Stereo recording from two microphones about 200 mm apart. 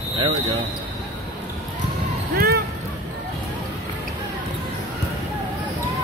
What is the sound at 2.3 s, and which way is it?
Music, 50° right (ahead or behind).